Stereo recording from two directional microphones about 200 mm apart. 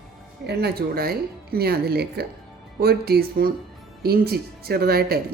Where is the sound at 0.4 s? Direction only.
50° right (ahead or behind).